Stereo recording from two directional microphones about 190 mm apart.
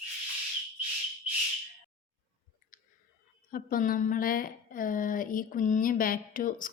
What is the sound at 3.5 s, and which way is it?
Speech, 50° left (ahead or behind).